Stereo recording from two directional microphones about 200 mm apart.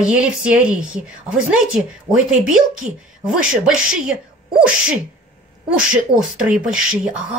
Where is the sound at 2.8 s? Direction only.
40° right (ahead or behind).